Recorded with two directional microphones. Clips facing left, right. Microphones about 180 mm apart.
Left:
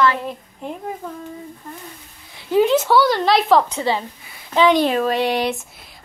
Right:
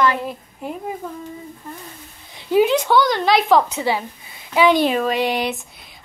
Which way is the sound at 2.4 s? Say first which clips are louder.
Right 1 dB; 15° right (ahead or behind).